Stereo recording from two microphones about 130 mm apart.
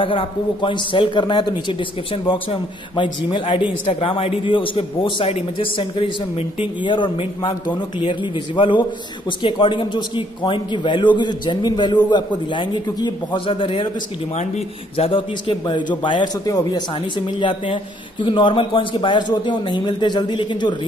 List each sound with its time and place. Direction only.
0.0 s a man's voice: 40° left (ahead or behind)
15.0 s a man's voice: 45° left (ahead or behind)